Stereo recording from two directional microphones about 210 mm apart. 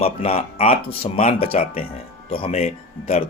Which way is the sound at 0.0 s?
30° left (ahead or behind).